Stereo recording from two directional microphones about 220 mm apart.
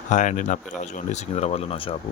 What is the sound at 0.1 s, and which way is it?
Speech, 35° left (ahead or behind).